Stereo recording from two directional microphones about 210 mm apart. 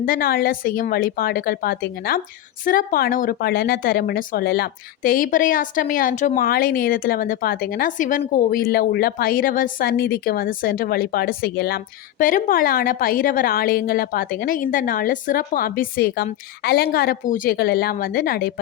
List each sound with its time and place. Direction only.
0.0 s speech: 45° left (ahead or behind)